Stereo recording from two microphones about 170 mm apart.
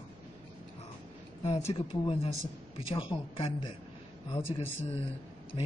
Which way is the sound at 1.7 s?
35° left (ahead or behind).